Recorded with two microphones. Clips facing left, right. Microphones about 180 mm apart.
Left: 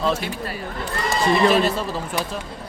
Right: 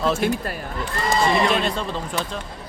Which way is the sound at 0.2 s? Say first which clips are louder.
Right 8 dB; 50° right (ahead or behind).